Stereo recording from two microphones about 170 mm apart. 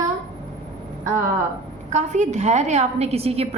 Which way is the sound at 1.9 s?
45° right (ahead or behind).